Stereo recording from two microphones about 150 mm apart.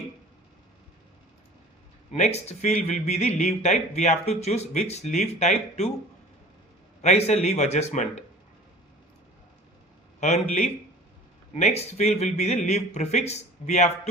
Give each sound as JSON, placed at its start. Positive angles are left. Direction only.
{"t": 2.1, "sound": "speech", "side_deg": 45}
{"t": 7.0, "sound": "speech", "side_deg": 45}
{"t": 10.2, "sound": "a man's voice", "side_deg": 50}
{"t": 11.5, "sound": "speech", "side_deg": 45}